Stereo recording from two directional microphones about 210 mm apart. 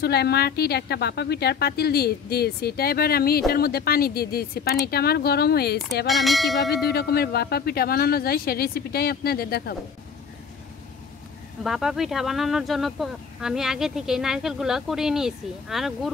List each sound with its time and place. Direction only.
0.0 s a woman's voice: 50° left (ahead or behind)
6.0 s speech: centre (ahead or behind)
6.7 s a woman's voice: 50° left (ahead or behind)
11.6 s speech: centre (ahead or behind)